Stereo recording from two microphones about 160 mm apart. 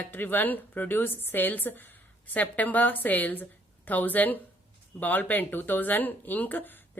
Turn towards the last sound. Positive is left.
turn(degrees=10)  # may be behind; listen again after turning